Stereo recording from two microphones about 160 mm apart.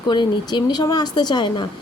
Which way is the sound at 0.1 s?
30° left (ahead or behind).